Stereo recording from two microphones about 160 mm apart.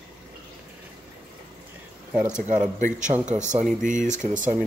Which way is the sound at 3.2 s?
50° right (ahead or behind).